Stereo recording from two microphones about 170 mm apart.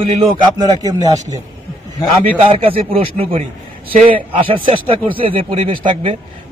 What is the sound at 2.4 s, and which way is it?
A man's voice, 30° right (ahead or behind).